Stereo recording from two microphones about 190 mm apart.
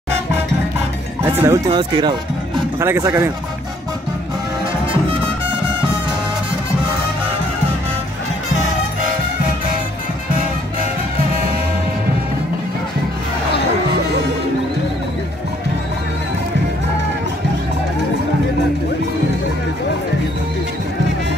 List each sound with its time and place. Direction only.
1.2 s speech: 15° right (ahead or behind)
1.7 s speech: 25° right (ahead or behind)